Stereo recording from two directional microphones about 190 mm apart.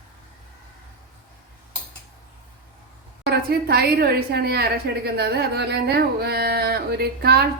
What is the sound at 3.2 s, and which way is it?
Carnatic music, 55° right (ahead or behind).